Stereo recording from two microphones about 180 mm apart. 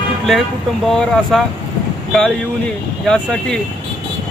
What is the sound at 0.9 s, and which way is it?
Speech, centre (ahead or behind).